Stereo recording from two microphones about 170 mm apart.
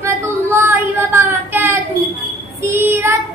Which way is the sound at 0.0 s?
15° right (ahead or behind).